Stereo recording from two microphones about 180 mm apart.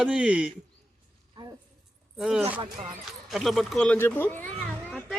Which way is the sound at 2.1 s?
5° right (ahead or behind).